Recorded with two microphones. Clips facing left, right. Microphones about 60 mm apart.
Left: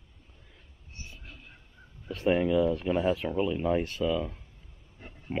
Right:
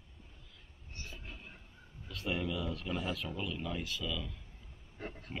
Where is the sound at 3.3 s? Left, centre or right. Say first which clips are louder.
Left 12 dB; left.